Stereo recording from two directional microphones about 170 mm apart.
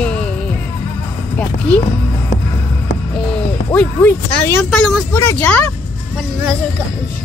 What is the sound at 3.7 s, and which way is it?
Speech, 10° left (ahead or behind).